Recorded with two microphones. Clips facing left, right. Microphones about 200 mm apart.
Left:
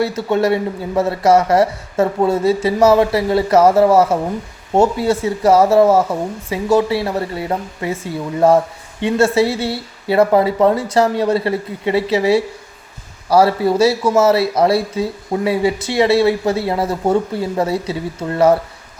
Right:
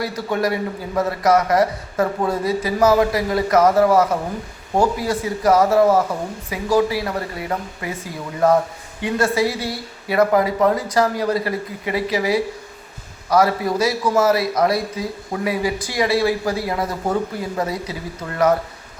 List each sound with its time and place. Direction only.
0.0 s a man's voice: 25° left (ahead or behind)